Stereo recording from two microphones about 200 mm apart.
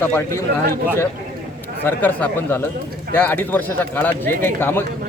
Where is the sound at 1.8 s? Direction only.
10° left (ahead or behind).